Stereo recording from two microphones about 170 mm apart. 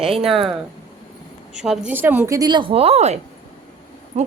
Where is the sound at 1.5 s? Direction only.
5° right (ahead or behind); by 3.1 s 40° right (ahead or behind).